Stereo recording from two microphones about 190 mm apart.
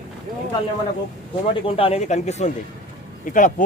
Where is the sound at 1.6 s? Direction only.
30° left (ahead or behind).